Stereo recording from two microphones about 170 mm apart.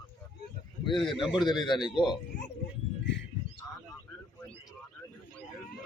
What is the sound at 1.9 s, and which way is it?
Speech, 25° left (ahead or behind).